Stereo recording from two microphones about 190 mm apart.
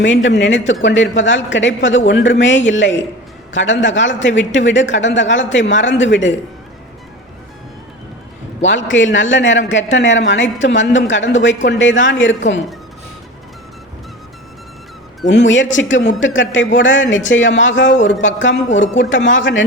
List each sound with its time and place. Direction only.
0.0 s a man's voice: 70° left (ahead or behind)
2.0 s a man's voice: 65° left (ahead or behind)
8.6 s a man's voice: 80° left
15.2 s a man's voice: 70° left (ahead or behind)